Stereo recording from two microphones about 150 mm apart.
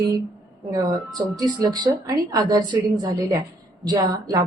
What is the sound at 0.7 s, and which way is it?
A woman's voice, 25° right (ahead or behind).